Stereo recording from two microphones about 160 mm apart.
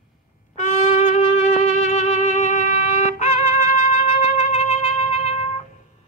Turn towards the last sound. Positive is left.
turn(degrees=40)  # may be behind; listen again after turning